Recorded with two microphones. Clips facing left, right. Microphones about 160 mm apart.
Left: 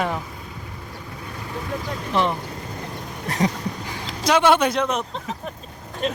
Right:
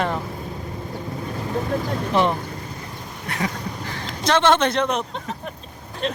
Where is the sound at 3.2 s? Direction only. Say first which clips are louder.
Left 4 dB; 35° left (ahead or behind).